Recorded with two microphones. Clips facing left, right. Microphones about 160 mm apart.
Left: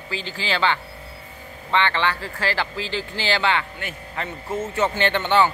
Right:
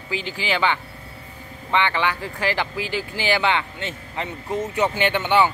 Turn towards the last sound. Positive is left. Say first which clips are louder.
# even
turn(degrees=-10)  # may be behind; listen again after turning